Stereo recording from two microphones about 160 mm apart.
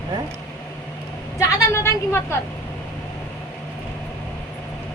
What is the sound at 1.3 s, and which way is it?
A woman's voice, 20° left (ahead or behind).